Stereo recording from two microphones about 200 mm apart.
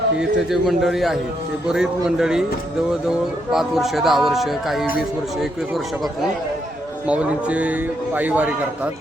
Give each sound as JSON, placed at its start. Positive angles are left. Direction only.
{"t": 0.2, "sound": "speech", "side_deg": 0}
{"t": 3.5, "sound": "speech", "side_deg": 0}
{"t": 7.1, "sound": "a man's voice", "side_deg": -5}